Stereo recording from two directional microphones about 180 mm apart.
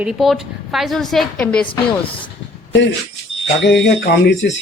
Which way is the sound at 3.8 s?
70° left (ahead or behind).